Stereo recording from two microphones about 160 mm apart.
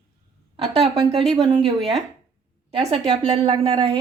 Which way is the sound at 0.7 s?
35° right (ahead or behind).